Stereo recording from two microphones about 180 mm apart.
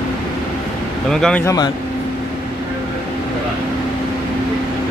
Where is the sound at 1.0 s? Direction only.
5° left (ahead or behind).